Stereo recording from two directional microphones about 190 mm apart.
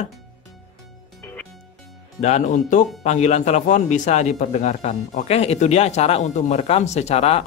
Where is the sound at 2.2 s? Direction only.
40° left (ahead or behind).